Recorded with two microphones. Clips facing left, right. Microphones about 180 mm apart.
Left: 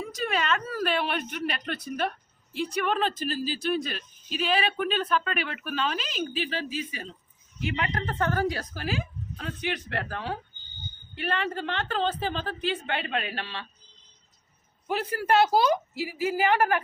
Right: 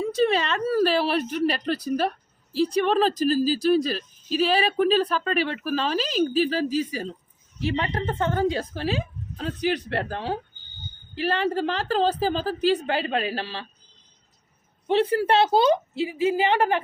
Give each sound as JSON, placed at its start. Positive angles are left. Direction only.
{"t": 0.0, "sound": "speech", "side_deg": -30}
{"t": 14.8, "sound": "a woman's voice", "side_deg": -25}